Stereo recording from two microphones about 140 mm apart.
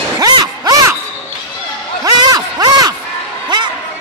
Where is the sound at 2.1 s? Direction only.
30° right (ahead or behind).